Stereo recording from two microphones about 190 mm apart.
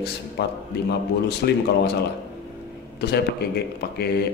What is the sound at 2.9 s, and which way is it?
Speech, 60° left (ahead or behind).